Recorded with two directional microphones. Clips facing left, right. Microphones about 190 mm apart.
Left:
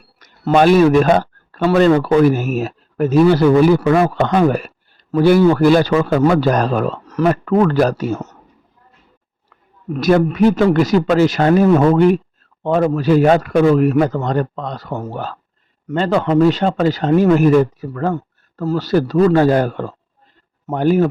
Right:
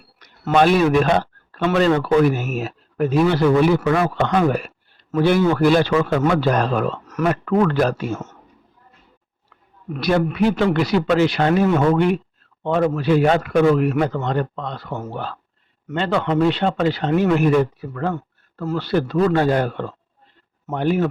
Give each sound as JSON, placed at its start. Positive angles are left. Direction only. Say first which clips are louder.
{"t": 0.2, "sound": "a man's voice", "louder": "left 3 dB", "side_deg": 45}
{"t": 9.9, "sound": "a man's voice", "louder": "left 5 dB", "side_deg": 40}